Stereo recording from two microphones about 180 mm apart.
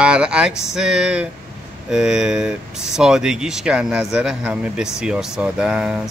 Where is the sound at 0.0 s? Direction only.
5° right (ahead or behind).